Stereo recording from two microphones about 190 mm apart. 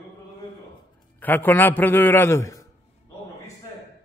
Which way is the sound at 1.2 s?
10° left (ahead or behind).